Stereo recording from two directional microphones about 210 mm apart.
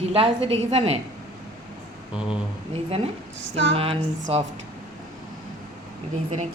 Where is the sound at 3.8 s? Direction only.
30° right (ahead or behind).